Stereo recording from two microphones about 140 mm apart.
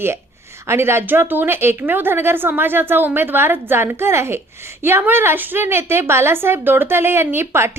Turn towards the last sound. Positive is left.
turn(degrees=-15)  # may be behind; listen again after turning